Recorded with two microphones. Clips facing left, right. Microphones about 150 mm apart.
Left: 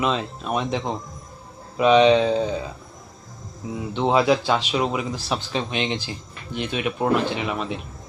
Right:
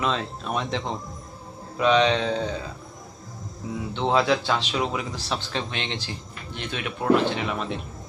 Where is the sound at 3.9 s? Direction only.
15° left (ahead or behind).